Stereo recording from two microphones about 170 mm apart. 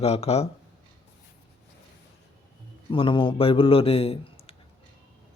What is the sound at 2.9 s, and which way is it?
Speech, 30° left (ahead or behind).